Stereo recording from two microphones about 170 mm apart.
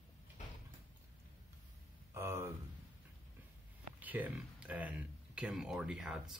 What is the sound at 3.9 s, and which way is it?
Speech, 10° right (ahead or behind).